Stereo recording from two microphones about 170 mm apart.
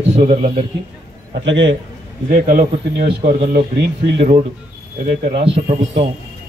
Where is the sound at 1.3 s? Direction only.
90° right.